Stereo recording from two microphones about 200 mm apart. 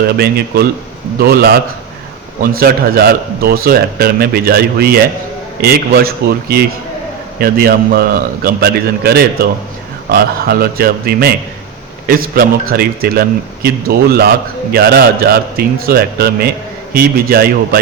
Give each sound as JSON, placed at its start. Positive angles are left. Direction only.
{"t": 0.1, "sound": "a man's voice", "side_deg": -50}